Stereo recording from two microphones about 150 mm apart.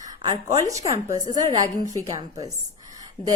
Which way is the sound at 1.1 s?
55° left (ahead or behind).